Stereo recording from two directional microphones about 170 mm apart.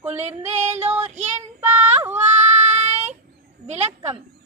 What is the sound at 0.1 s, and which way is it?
Music, 40° right (ahead or behind).